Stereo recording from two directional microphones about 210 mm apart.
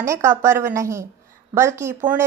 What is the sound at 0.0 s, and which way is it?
A woman's voice, 15° right (ahead or behind).